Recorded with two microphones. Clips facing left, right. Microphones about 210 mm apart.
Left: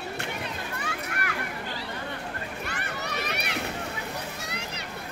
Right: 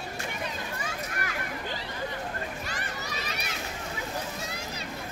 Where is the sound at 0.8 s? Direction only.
65° left (ahead or behind).